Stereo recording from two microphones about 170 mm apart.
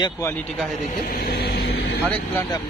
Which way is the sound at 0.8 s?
55° left (ahead or behind).